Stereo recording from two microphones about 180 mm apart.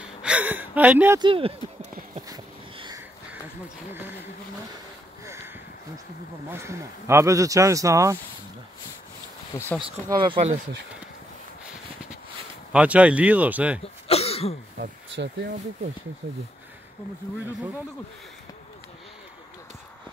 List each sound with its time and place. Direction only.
0.2 s speech: 5° right (ahead or behind)
1.2 s speech: 30° right (ahead or behind)
1.8 s a sound: 40° right (ahead or behind)
2.2 s a sound: 20° right (ahead or behind)
6.5 s speech: 15° right (ahead or behind)
9.5 s speech: 15° left (ahead or behind)
9.8 s speech: 25° right (ahead or behind)
12.7 s speech: 5° right (ahead or behind)
14.0 s throat clearing: 35° left (ahead or behind)